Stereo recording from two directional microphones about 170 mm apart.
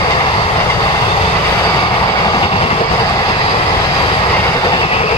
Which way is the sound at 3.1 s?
20° left (ahead or behind).